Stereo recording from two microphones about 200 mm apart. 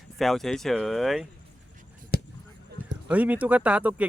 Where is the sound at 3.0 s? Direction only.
10° right (ahead or behind).